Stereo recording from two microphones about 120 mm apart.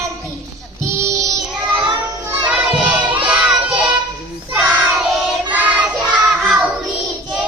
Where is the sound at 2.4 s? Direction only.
10° right (ahead or behind).